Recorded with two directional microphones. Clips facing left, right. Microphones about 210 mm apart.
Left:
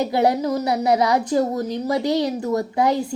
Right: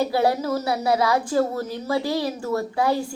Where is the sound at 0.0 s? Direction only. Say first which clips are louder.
Left 2 dB; 20° left (ahead or behind).